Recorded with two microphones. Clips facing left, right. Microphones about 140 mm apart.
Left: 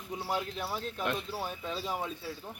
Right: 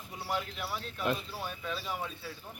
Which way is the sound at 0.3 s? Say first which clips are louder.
Left 1 dB; 25° left (ahead or behind).